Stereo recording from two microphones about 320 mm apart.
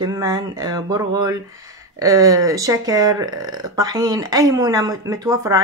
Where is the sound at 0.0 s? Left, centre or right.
Centre.